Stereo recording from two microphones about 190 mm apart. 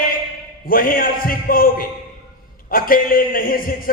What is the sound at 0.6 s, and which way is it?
Speech, 50° left (ahead or behind).